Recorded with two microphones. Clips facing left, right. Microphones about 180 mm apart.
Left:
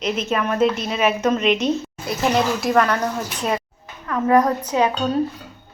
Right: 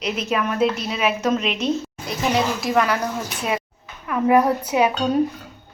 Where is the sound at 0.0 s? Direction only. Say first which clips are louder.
Left 1 dB; 5° right (ahead or behind).